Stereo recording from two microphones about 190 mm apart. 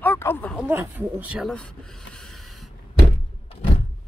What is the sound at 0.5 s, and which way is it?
Speech, 10° right (ahead or behind).